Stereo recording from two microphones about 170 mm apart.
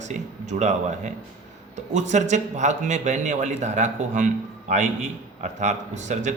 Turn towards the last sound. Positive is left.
turn(degrees=-45)  # may be behind; listen again after turning